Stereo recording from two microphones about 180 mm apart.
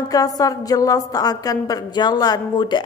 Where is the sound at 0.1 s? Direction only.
20° left (ahead or behind).